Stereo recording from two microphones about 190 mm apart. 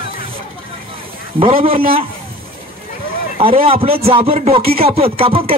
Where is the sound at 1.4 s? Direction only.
30° right (ahead or behind).